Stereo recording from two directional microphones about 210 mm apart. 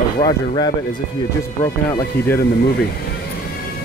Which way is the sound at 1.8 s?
10° left (ahead or behind).